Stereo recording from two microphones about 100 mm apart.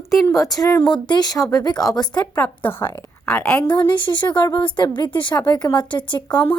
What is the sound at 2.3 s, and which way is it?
A woman's voice, 20° left (ahead or behind).